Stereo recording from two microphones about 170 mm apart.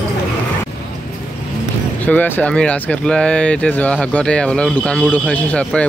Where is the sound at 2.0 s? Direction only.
10° left (ahead or behind).